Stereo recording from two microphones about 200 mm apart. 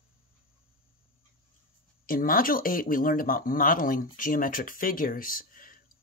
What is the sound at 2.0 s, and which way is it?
Speech, 45° left (ahead or behind).